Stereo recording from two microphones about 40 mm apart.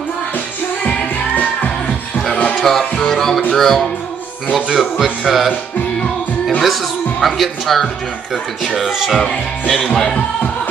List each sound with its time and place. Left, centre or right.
0.8 s music: left
1.9 s music: left
2.5 s music: centre
3.5 s speech: centre
4.5 s speech: centre
4.7 s speech: centre
6.6 s speech: centre
9.3 s speech: centre